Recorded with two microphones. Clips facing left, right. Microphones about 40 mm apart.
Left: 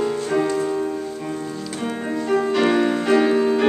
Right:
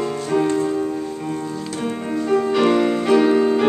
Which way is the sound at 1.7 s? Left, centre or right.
Centre.